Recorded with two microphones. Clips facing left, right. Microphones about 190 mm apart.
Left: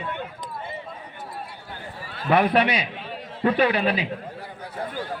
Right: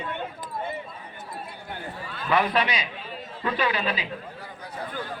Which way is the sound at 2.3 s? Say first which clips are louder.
Left 4 dB; 60° left (ahead or behind).